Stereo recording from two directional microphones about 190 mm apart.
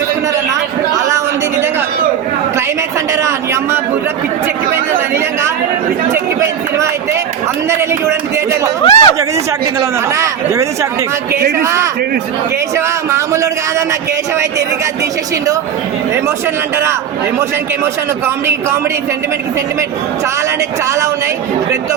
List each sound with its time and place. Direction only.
3.2 s a man's voice: 15° right (ahead or behind)
8.8 s speech: 30° left (ahead or behind)
10.2 s a man's voice: 15° right (ahead or behind)